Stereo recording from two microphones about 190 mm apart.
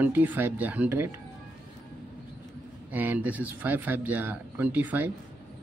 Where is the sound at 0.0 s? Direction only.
10° right (ahead or behind).